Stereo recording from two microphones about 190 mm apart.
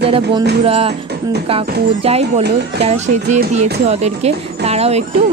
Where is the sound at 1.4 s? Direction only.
30° right (ahead or behind).